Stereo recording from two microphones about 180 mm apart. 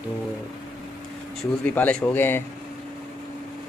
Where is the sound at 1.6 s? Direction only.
10° left (ahead or behind).